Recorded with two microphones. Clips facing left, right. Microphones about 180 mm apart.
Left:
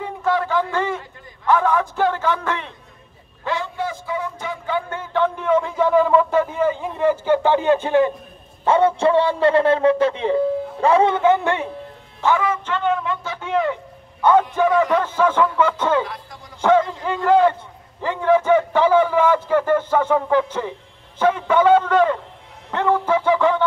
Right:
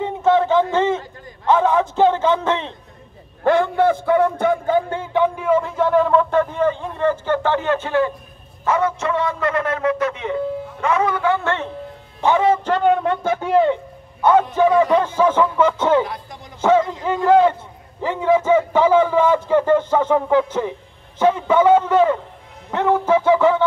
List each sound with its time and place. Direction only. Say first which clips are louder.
0.0 s a sound: right 5 dB; 25° right (ahead or behind)
3.4 s a man's voice: right 10 dB; 55° right (ahead or behind)
5.1 s a man's voice: right 1 dB; 10° right (ahead or behind); by 8.1 s 15° left (ahead or behind)
8.6 s a man's voice: left 4 dB; 30° left (ahead or behind); by 11.7 s 15° left (ahead or behind)
12.2 s a man's voice: right 4 dB; 25° right (ahead or behind)
12.6 s speech: right 5 dB; 40° right (ahead or behind)
13.0 s speech: right 7 dB; 55° right (ahead or behind); by 13.7 s 35° right (ahead or behind)
14.2 s a man's voice: right 1 dB; 10° right (ahead or behind)
22.7 s a sound: right 2 dB; 10° right (ahead or behind)